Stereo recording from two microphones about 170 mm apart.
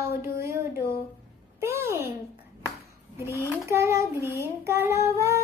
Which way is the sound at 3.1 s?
15° right (ahead or behind).